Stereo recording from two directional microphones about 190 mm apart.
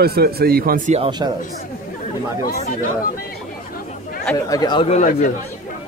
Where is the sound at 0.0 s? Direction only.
55° right (ahead or behind); by 1.1 s 35° right (ahead or behind).